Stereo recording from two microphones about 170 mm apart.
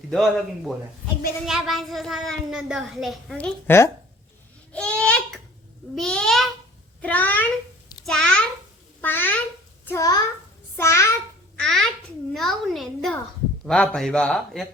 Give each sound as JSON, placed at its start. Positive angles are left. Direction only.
{"t": 0.1, "sound": "a child's voice", "side_deg": 0}
{"t": 4.7, "sound": "babbling", "side_deg": 5}
{"t": 5.9, "sound": "a child's voice", "side_deg": 5}
{"t": 11.5, "sound": "a child's voice", "side_deg": 5}